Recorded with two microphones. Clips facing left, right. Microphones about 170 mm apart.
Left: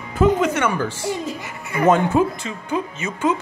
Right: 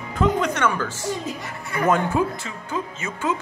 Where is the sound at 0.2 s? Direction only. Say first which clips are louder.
Left 4 dB; 10° left (ahead or behind).